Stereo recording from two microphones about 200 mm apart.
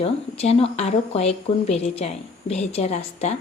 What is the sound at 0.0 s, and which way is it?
Speech, 30° left (ahead or behind).